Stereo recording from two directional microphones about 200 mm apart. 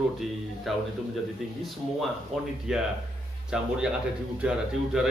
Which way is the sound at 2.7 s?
5° right (ahead or behind).